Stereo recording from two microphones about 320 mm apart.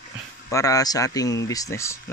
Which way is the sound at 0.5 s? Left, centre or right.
Centre.